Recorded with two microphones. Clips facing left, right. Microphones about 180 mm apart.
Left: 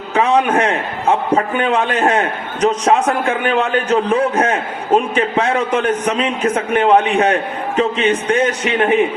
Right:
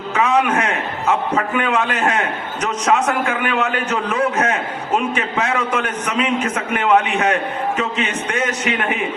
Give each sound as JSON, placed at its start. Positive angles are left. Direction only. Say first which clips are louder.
{"t": 0.1, "sound": "a man's voice", "louder": "left 3 dB", "side_deg": 35}